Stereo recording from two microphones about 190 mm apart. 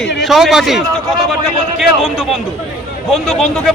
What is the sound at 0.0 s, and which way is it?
Speech, centre (ahead or behind).